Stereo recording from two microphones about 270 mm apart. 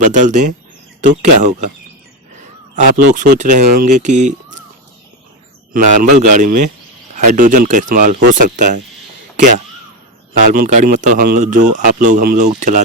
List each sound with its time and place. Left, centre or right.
0.0 s speech: right
2.7 s speech: right
5.7 s speech: right
10.4 s speech: right